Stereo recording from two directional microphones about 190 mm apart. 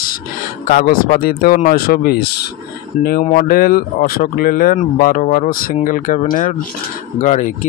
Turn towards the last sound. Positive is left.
turn(degrees=40)  # may be behind; listen again after turning